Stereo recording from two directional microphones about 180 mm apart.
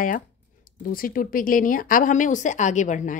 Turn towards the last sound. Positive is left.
turn(degrees=45)  # may be behind; listen again after turning